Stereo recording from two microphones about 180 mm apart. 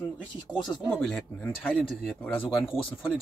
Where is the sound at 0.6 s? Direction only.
5° left (ahead or behind).